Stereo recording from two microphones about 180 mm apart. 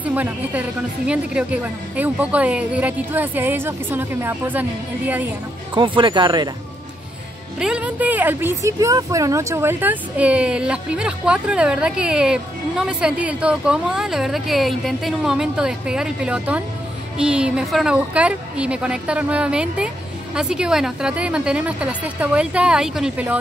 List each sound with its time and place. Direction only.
0.0 s a woman's voice: 10° right (ahead or behind)
5.8 s speech: 25° right (ahead or behind)
7.5 s speech: 5° right (ahead or behind)